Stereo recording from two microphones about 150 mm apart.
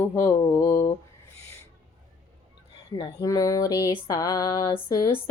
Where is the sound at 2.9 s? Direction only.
25° left (ahead or behind).